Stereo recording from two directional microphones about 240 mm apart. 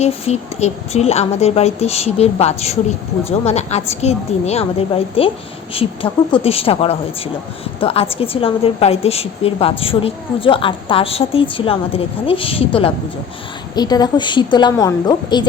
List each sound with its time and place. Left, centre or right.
0.0 s a woman's voice: left